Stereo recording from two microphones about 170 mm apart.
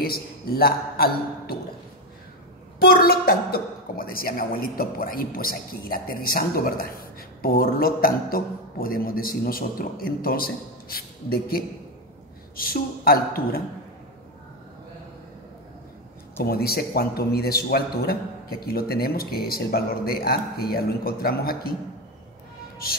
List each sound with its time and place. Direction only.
0.0 s a woman's voice: 65° left (ahead or behind)
2.8 s a woman's voice: 65° left (ahead or behind)
16.4 s a woman's voice: 65° left (ahead or behind)